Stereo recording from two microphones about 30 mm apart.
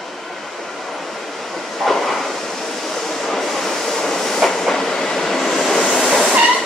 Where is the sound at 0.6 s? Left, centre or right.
Centre.